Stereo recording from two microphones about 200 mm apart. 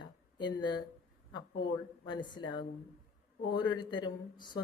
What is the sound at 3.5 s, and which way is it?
Speech, 20° left (ahead or behind).